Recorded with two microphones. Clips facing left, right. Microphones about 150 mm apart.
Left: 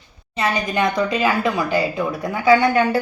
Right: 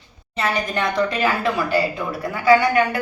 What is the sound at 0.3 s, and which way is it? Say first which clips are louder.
A woman's voice: left 2 dB; 15° left (ahead or behind).